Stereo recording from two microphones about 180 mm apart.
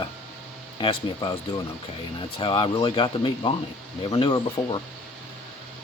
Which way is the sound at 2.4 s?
30° left (ahead or behind).